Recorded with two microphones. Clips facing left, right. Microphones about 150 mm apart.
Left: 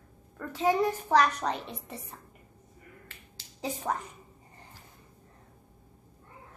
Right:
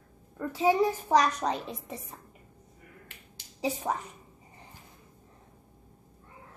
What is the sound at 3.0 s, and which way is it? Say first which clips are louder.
Finger snapping: even; 15° right (ahead or behind).